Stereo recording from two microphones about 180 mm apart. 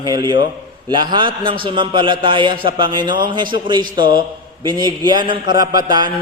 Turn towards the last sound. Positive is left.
turn(degrees=-20)  # may be behind; listen again after turning